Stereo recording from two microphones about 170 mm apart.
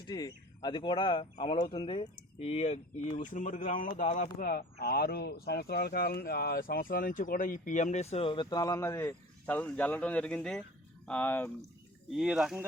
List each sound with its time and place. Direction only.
0.1 s speech: 25° left (ahead or behind); by 4.4 s 45° left (ahead or behind)
4.4 s speech: 65° left (ahead or behind); by 11.5 s 10° left (ahead or behind)
12.1 s speech: 5° right (ahead or behind)